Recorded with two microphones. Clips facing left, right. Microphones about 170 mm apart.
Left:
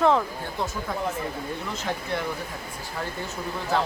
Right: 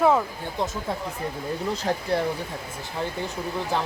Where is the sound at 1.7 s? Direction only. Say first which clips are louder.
Right 6 dB; 35° right (ahead or behind).